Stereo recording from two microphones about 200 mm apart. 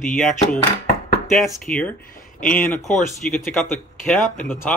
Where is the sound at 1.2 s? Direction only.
Centre (ahead or behind).